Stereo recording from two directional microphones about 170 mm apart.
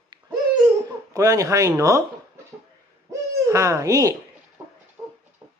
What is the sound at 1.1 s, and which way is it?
Speech, 20° right (ahead or behind).